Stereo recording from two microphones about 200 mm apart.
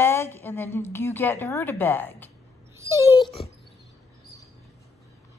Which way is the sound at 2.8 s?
15° right (ahead or behind).